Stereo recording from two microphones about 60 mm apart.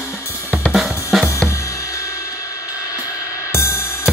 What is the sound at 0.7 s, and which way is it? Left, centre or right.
Drum kit, centre.